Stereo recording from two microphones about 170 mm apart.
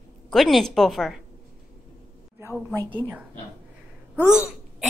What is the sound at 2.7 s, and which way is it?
Speech, 20° right (ahead or behind).